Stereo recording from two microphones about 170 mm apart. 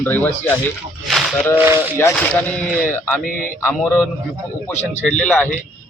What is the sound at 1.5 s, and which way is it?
Speech, 15° right (ahead or behind).